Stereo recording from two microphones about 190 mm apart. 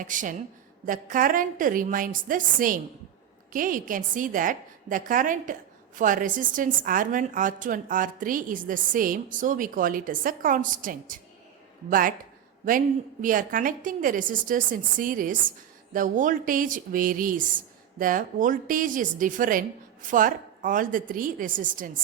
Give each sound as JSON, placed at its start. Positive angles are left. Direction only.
{"t": 0.0, "sound": "a woman's voice", "side_deg": -45}
{"t": 13.2, "sound": "a woman's voice", "side_deg": -45}